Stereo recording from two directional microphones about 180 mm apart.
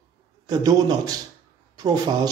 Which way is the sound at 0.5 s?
20° right (ahead or behind).